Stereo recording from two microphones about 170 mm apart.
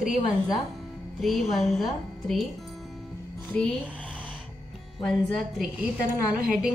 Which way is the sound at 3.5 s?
5° left (ahead or behind).